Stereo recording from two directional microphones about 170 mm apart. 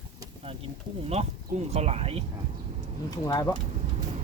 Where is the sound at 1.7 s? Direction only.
40° right (ahead or behind).